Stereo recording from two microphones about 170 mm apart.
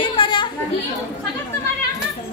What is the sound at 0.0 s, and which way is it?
Chatter, 30° left (ahead or behind).